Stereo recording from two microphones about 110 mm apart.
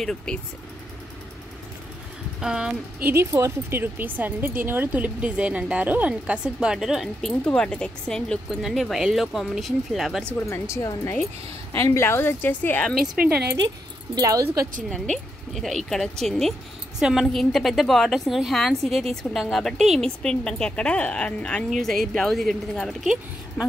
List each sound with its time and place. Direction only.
0.0 s speech: 5° left (ahead or behind)
2.4 s speech: 5° right (ahead or behind)
3.0 s speech: 20° right (ahead or behind); by 10.2 s centre (ahead or behind)
10.5 s speech: 25° left (ahead or behind)
13.0 s speech: 5° right (ahead or behind)
14.1 s speech: 30° right (ahead or behind)
15.5 s speech: centre (ahead or behind)